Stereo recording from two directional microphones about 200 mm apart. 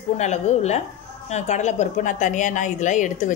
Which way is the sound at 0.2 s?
35° left (ahead or behind).